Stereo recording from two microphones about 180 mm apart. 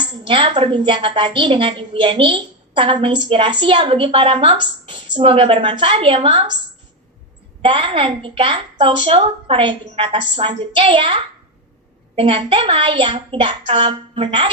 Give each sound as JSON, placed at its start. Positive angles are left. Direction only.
{"t": 0.3, "sound": "a woman's voice", "side_deg": -30}
{"t": 7.6, "sound": "a woman's voice", "side_deg": -30}